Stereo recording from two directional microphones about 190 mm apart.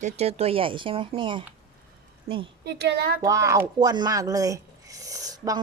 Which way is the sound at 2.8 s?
55° right (ahead or behind).